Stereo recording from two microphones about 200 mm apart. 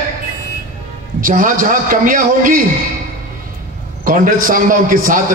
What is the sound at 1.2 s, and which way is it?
A man's voice, 45° right (ahead or behind).